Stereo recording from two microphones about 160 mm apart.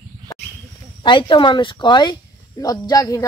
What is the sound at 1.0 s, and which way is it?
Speech, 30° left (ahead or behind).